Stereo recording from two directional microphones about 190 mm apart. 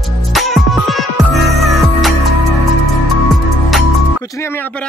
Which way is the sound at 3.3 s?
Centre (ahead or behind).